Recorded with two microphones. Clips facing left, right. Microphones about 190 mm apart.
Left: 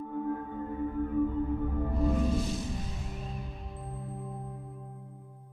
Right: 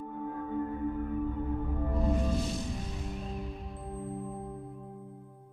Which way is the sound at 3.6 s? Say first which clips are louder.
Right 3 dB; centre (ahead or behind).